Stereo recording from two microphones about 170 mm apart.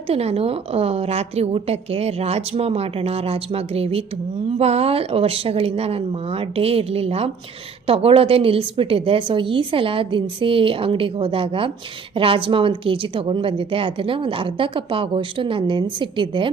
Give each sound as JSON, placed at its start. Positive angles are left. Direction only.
{"t": 0.1, "sound": "a woman's voice", "side_deg": -35}